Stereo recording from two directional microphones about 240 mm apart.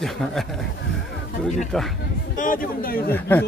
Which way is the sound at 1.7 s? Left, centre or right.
Centre.